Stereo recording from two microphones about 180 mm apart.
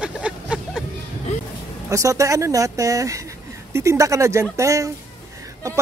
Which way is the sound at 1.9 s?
15° right (ahead or behind).